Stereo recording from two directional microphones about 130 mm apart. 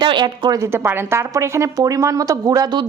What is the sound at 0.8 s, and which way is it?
Speech, 20° right (ahead or behind).